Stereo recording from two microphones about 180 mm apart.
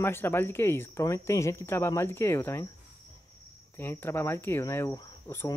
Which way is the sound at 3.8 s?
10° left (ahead or behind).